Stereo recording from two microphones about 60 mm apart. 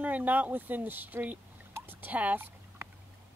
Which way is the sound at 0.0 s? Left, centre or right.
Right.